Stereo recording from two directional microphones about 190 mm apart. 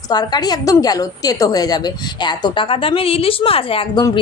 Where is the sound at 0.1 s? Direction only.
20° left (ahead or behind).